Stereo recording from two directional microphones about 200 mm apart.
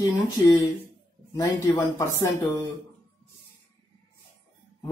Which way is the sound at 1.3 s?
15° left (ahead or behind).